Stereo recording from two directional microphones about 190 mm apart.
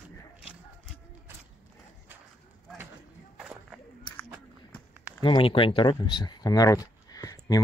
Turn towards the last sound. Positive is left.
turn(degrees=20)  # may be behind; listen again after turning